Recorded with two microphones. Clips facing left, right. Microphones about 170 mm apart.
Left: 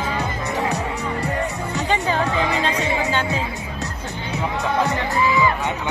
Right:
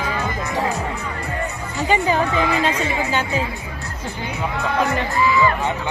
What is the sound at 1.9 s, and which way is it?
Music, 10° right (ahead or behind).